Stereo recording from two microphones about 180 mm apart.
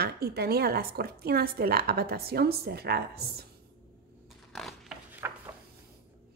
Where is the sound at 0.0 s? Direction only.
60° right (ahead or behind).